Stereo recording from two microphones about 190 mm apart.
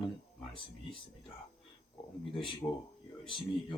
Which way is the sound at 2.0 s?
30° left (ahead or behind).